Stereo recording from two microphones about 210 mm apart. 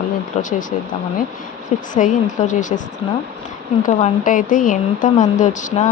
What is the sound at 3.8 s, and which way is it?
Speech, 40° left (ahead or behind).